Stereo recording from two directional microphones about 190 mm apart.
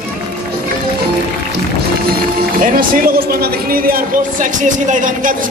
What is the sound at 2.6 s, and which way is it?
A man's voice, 50° right (ahead or behind).